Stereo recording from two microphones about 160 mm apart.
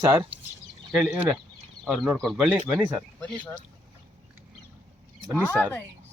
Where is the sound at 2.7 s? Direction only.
10° right (ahead or behind).